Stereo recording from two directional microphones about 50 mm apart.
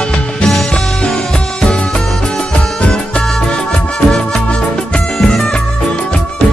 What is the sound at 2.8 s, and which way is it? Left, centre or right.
Music, left.